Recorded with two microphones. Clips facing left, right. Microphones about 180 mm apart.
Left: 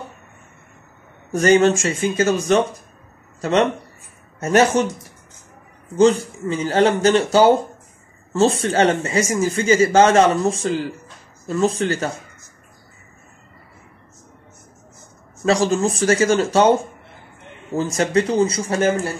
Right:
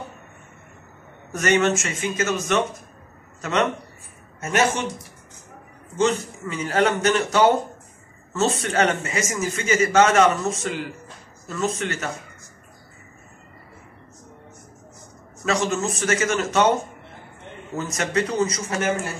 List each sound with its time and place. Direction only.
1.3 s speech: 30° left (ahead or behind)
5.9 s speech: 35° left (ahead or behind)
15.4 s speech: 30° left (ahead or behind)
17.7 s speech: 30° left (ahead or behind)